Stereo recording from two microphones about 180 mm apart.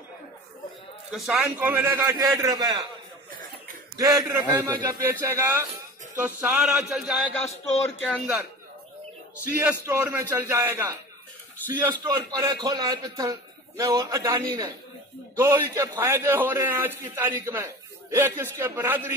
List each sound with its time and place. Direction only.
1.1 s a man's voice: centre (ahead or behind); by 2.9 s 20° right (ahead or behind)
3.9 s a man's voice: 20° right (ahead or behind); by 8.4 s 5° left (ahead or behind)
9.5 s a man's voice: 10° right (ahead or behind)
12.0 s a man's voice: 25° right (ahead or behind)